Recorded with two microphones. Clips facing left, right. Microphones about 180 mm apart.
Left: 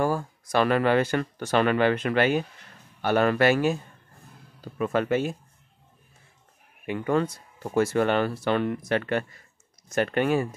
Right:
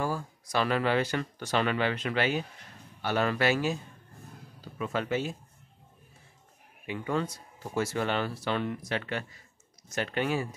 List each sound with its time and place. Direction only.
0.0 s speech: 55° left (ahead or behind)
4.7 s speech: 55° left (ahead or behind)
6.9 s speech: 55° left (ahead or behind)